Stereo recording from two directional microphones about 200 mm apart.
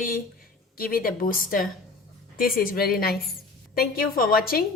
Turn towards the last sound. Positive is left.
turn(degrees=45)  # may be behind; listen again after turning